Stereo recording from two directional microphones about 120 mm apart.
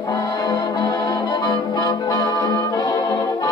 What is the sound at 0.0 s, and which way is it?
Music, 30° left (ahead or behind).